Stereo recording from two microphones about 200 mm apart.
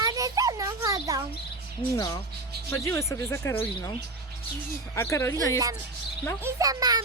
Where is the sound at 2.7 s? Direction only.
15° left (ahead or behind).